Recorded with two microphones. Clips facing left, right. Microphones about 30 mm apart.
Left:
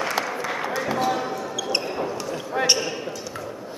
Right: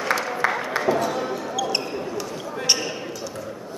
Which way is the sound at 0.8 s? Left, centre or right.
Centre.